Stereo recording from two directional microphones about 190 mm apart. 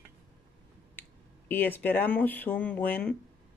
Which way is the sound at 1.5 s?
10° left (ahead or behind).